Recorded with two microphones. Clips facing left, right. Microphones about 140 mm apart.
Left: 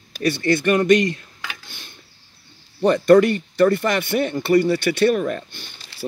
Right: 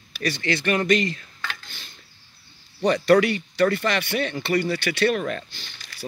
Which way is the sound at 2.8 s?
50° left (ahead or behind).